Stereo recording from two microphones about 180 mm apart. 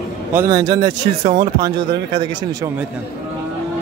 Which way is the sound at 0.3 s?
15° right (ahead or behind).